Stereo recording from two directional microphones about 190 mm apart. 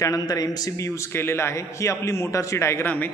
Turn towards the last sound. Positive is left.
turn(degrees=10)  # may be behind; listen again after turning